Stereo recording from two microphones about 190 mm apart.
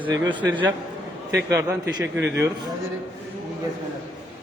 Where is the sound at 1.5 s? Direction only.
15° right (ahead or behind).